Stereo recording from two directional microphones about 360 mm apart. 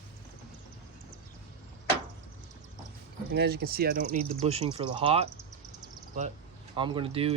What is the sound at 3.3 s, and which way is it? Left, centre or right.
Speech, right.